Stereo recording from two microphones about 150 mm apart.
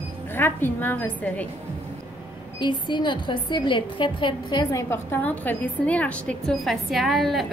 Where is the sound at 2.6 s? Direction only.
30° left (ahead or behind).